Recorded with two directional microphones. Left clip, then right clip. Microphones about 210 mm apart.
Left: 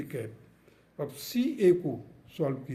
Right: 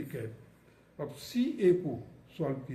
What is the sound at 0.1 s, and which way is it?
A man's voice, 55° left (ahead or behind).